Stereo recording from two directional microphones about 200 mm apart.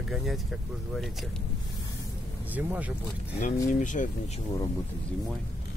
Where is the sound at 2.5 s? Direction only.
10° right (ahead or behind).